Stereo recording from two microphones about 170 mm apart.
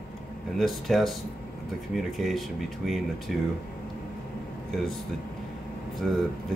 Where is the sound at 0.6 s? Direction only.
Centre (ahead or behind).